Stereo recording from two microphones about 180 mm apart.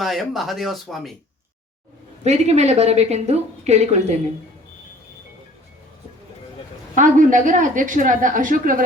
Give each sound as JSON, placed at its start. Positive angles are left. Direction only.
{"t": 0.0, "sound": "speech", "side_deg": 0}
{"t": 2.2, "sound": "a woman's voice", "side_deg": -40}
{"t": 6.9, "sound": "a woman's voice", "side_deg": -45}